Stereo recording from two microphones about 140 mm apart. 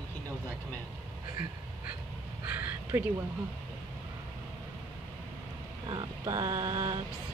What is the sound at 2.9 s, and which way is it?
Speech, 20° right (ahead or behind).